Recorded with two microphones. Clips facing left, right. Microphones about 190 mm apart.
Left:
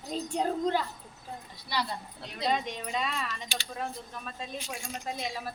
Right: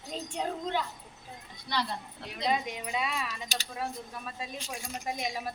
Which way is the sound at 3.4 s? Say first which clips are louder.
Even; 40° right (ahead or behind).